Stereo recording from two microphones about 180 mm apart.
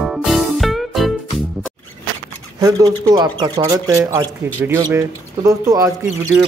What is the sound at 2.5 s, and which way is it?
Speech, 20° right (ahead or behind).